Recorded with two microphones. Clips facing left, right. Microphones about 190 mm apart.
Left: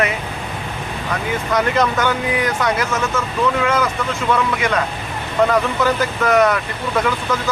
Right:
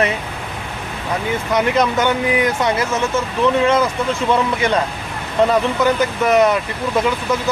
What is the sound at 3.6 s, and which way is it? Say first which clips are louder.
Speech: right 3 dB; 30° right (ahead or behind).